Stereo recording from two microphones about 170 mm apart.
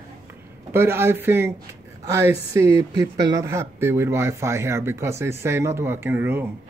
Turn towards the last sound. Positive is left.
turn(degrees=-10)  # may be behind; listen again after turning